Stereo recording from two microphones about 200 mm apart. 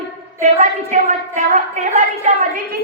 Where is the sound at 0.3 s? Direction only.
35° right (ahead or behind).